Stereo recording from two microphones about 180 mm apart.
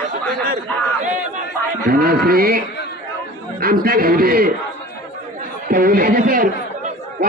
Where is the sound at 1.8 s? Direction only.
55° right (ahead or behind).